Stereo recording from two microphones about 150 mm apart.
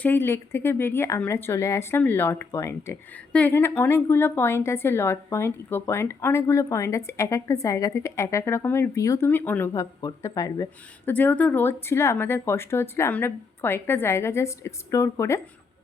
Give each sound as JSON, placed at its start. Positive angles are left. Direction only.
{"t": 0.0, "sound": "a woman's voice", "side_deg": 15}
{"t": 11.1, "sound": "a woman's voice", "side_deg": 10}